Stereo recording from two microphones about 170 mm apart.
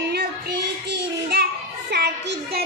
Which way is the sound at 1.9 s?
85° right.